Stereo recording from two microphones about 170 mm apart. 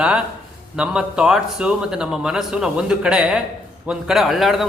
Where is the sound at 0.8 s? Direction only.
5° right (ahead or behind).